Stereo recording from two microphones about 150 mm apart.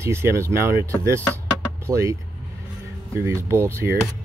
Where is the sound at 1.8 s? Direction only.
20° right (ahead or behind).